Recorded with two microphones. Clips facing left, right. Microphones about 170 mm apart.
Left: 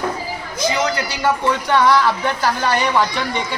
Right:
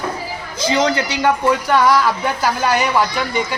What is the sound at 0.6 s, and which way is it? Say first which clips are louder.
Speech: right 3 dB; 30° right (ahead or behind).